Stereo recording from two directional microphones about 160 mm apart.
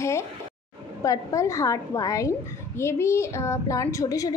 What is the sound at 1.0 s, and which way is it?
A woman's voice, 20° left (ahead or behind).